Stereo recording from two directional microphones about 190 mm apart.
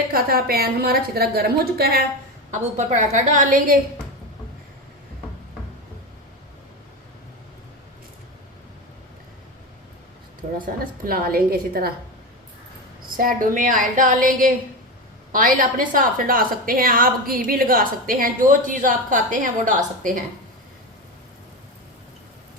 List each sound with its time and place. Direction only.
0.1 s a woman's voice: 50° right (ahead or behind)
2.5 s a woman's voice: 40° right (ahead or behind)
11.0 s a woman's voice: 50° right (ahead or behind)
13.1 s a woman's voice: 45° right (ahead or behind)